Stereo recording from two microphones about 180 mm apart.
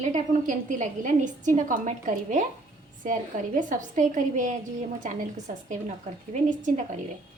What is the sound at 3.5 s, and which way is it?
A woman's voice, 45° right (ahead or behind).